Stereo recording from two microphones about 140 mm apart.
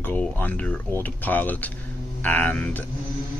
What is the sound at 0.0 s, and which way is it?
Speech, 10° left (ahead or behind).